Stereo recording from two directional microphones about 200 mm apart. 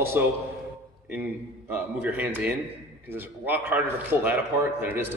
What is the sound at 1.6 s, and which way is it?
Speech, 10° right (ahead or behind).